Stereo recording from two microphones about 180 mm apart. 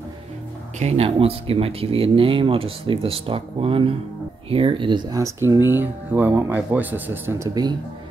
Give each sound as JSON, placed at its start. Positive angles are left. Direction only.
{"t": 0.7, "sound": "speech", "side_deg": -35}